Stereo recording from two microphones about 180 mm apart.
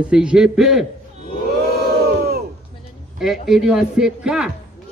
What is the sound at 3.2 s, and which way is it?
A man's voice, centre (ahead or behind).